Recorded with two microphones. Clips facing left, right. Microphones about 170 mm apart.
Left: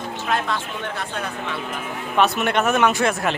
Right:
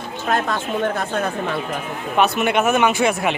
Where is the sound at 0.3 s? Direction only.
45° right (ahead or behind).